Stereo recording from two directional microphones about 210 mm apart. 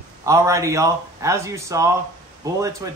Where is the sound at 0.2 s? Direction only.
15° right (ahead or behind).